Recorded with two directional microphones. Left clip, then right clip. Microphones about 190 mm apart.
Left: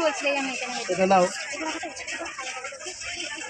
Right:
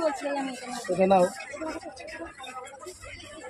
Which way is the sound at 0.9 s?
30° left (ahead or behind).